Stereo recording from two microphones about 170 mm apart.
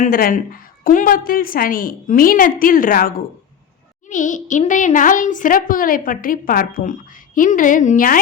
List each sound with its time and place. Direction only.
0.0 s a woman's voice: 55° left (ahead or behind)